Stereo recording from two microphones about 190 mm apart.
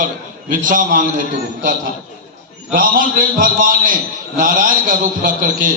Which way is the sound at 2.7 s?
45° right (ahead or behind).